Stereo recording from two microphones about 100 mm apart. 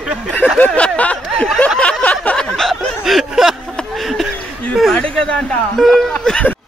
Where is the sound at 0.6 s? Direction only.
10° left (ahead or behind).